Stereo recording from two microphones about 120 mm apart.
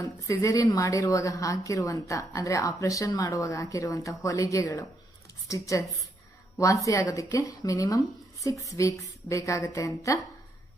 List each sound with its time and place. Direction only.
0.0 s a woman's voice: 25° left (ahead or behind)